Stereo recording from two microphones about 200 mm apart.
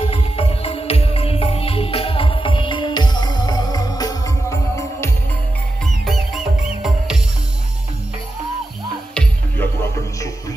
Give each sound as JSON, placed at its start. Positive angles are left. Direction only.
{"t": 0.0, "sound": "music", "side_deg": 30}
{"t": 9.1, "sound": "music", "side_deg": 5}